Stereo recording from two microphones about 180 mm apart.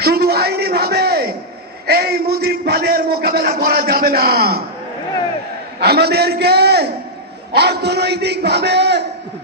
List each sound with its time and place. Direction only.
0.0 s a sound: 60° right (ahead or behind)
1.9 s a man's voice: 60° right (ahead or behind)
5.8 s a man's voice: 65° right (ahead or behind)